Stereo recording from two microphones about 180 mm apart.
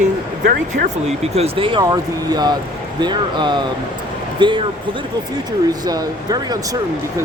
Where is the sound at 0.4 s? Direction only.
45° right (ahead or behind); by 4.6 s 25° right (ahead or behind).